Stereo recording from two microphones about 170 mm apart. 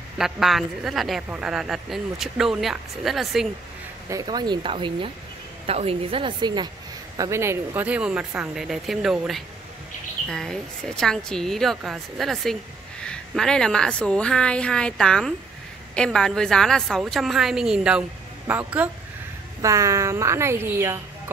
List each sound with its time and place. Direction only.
0.2 s a woman's voice: centre (ahead or behind)
4.1 s a woman's voice: 25° right (ahead or behind)
7.2 s a woman's voice: 15° right (ahead or behind)